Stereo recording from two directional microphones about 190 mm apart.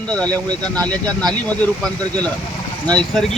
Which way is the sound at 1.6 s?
5° left (ahead or behind).